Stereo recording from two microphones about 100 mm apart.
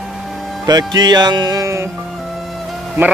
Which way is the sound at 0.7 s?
45° right (ahead or behind).